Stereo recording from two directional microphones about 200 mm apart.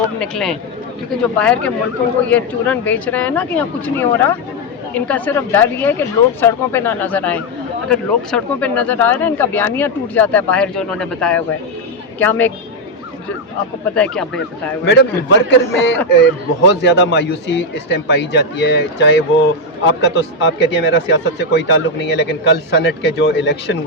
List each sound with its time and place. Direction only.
0.2 s speech: centre (ahead or behind)
13.9 s speech: 5° left (ahead or behind)
14.8 s speech: 60° left (ahead or behind)